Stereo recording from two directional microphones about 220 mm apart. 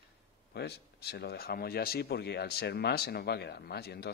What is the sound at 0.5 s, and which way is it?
A man's voice, 45° left (ahead or behind).